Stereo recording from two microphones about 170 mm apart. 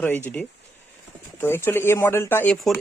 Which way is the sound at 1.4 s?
15° left (ahead or behind).